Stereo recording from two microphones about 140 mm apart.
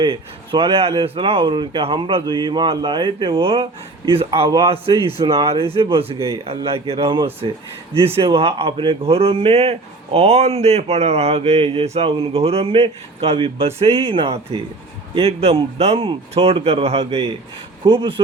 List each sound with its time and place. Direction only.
0.0 s speech: 35° right (ahead or behind)
4.4 s a man's voice: 30° right (ahead or behind)
5.7 s speech: 40° right (ahead or behind)